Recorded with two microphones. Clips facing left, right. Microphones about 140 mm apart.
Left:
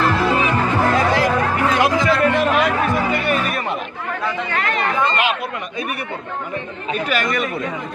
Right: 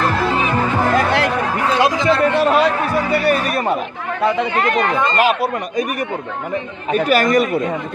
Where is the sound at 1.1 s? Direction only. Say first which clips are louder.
Even; 70° right (ahead or behind).